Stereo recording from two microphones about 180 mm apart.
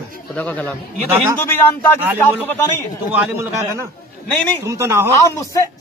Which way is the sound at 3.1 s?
15° right (ahead or behind).